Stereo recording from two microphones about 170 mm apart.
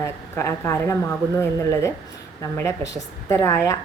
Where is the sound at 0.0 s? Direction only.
15° left (ahead or behind).